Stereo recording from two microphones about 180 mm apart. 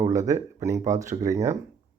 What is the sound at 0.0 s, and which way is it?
Speech, 15° right (ahead or behind).